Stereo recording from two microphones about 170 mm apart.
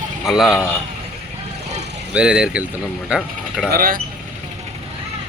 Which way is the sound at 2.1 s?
5° right (ahead or behind).